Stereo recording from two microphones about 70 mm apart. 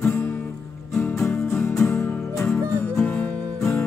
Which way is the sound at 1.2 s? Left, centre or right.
Left.